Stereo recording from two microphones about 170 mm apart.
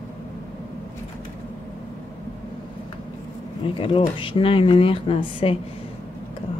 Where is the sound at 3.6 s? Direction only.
30° left (ahead or behind).